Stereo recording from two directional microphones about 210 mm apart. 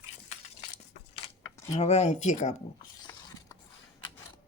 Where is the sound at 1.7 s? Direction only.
30° left (ahead or behind).